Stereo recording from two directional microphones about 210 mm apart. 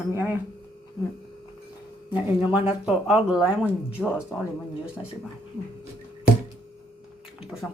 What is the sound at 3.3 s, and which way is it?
Speech, 5° right (ahead or behind).